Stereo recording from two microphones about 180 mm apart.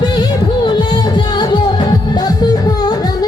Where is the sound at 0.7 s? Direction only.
25° left (ahead or behind).